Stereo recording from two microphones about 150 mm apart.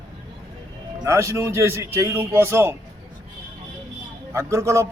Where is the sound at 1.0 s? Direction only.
20° right (ahead or behind).